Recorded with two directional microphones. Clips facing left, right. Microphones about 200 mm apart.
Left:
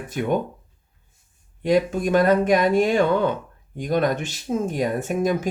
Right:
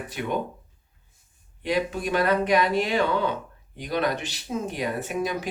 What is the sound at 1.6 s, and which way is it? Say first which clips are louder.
Speech: left 6 dB; 45° left (ahead or behind).